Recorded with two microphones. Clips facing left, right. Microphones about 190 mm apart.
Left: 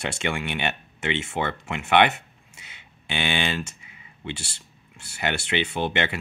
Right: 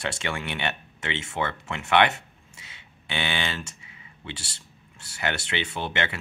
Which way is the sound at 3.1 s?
20° left (ahead or behind).